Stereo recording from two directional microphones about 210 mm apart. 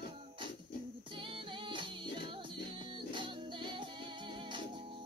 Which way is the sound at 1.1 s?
25° right (ahead or behind).